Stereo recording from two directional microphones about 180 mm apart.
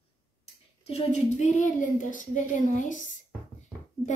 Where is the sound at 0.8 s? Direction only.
40° left (ahead or behind).